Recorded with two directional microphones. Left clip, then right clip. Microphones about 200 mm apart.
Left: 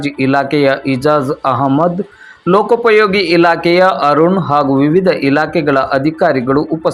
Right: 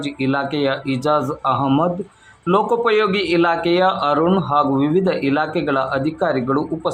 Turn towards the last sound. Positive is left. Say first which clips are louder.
# left 7 dB
turn(degrees=20)  # may be behind; listen again after turning